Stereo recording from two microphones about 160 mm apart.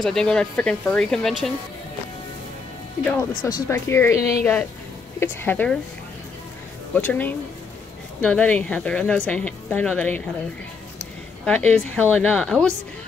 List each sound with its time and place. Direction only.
0.0 s speech: 5° left (ahead or behind)
3.0 s a woman's voice: 10° left (ahead or behind)
5.2 s a woman's voice: 10° left (ahead or behind)
7.0 s a woman's voice: 10° left (ahead or behind)
11.4 s a woman's voice: 10° left (ahead or behind)